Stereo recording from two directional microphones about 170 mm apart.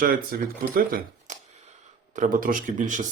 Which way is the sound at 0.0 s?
60° right (ahead or behind).